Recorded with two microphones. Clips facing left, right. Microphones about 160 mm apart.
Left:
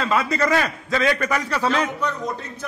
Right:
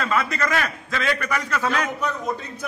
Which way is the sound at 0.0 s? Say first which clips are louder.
Left 3 dB; 25° left (ahead or behind).